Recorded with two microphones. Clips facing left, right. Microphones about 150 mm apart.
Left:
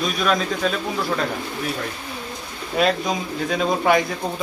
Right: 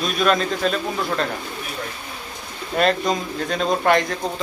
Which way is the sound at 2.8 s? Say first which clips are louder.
Right 1 dB; 5° left (ahead or behind).